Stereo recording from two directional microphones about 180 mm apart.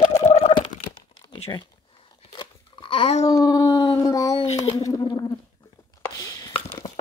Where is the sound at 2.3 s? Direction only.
25° left (ahead or behind).